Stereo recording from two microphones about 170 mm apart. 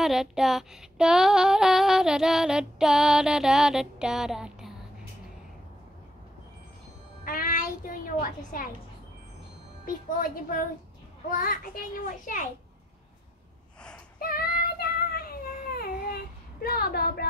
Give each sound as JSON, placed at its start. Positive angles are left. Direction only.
{"t": 0.0, "sound": "female singing", "side_deg": 0}
{"t": 7.2, "sound": "a sound", "side_deg": 55}
{"t": 10.2, "sound": "a child's voice", "side_deg": 55}
{"t": 14.2, "sound": "child singing", "side_deg": 60}
{"t": 16.6, "sound": "a child's voice", "side_deg": 65}